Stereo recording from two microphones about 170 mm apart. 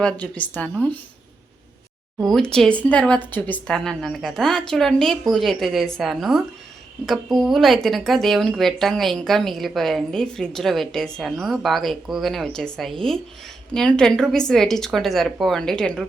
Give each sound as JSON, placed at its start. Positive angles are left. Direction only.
{"t": 0.0, "sound": "speech", "side_deg": 10}
{"t": 2.2, "sound": "speech", "side_deg": 0}